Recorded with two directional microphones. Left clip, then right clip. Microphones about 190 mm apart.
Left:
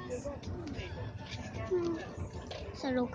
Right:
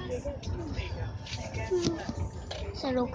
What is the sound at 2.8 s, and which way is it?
Speech, 10° left (ahead or behind).